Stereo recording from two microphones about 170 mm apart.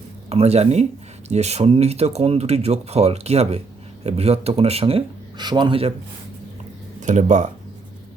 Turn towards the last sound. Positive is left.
turn(degrees=-45)  # may be behind; listen again after turning